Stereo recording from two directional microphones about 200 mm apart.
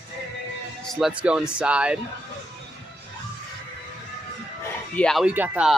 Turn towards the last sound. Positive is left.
turn(degrees=-5)  # may be behind; listen again after turning